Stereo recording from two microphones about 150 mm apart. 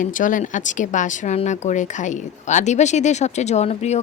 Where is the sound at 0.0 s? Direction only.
60° left (ahead or behind).